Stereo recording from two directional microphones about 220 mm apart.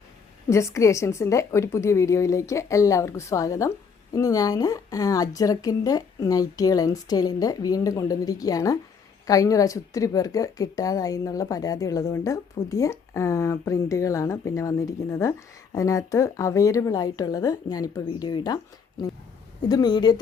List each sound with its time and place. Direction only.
0.5 s speech: 15° left (ahead or behind)